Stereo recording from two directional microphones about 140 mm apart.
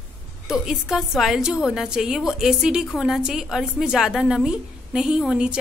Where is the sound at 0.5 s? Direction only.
5° right (ahead or behind).